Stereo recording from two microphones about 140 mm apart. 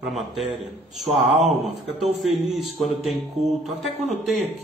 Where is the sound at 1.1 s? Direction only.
50° right (ahead or behind).